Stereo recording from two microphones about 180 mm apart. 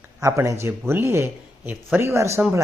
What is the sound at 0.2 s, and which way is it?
Speech, 15° right (ahead or behind).